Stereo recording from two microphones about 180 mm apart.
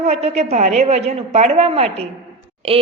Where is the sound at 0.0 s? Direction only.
35° right (ahead or behind).